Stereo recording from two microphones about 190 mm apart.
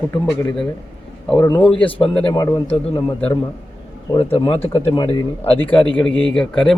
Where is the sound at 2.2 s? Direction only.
20° left (ahead or behind).